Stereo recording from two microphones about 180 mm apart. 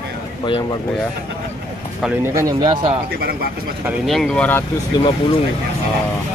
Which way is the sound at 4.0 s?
Centre (ahead or behind).